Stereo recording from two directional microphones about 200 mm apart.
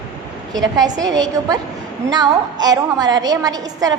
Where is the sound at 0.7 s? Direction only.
20° right (ahead or behind).